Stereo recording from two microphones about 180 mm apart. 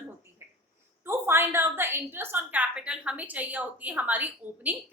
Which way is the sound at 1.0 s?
15° right (ahead or behind).